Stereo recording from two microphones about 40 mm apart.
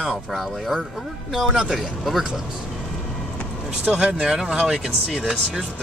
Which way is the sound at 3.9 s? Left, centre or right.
Right.